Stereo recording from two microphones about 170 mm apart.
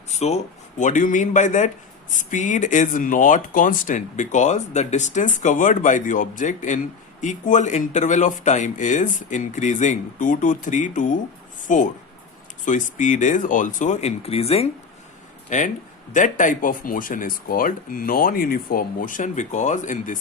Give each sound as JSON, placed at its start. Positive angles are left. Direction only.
{"t": 0.1, "sound": "a man's voice", "side_deg": 40}
{"t": 15.4, "sound": "a man's voice", "side_deg": 45}